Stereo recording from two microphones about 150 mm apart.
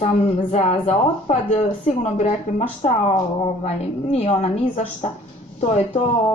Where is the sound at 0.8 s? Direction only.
50° left (ahead or behind).